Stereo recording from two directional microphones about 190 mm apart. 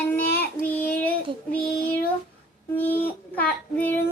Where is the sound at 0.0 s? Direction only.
10° left (ahead or behind).